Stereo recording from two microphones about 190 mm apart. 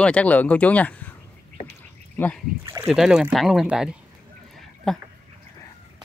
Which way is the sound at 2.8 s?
Centre (ahead or behind).